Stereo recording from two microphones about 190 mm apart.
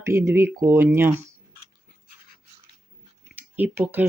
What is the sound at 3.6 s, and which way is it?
Speech, 10° right (ahead or behind).